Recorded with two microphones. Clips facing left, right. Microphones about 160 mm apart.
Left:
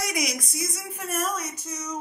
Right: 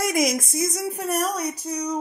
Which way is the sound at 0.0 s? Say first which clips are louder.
Right 7 dB; 45° right (ahead or behind).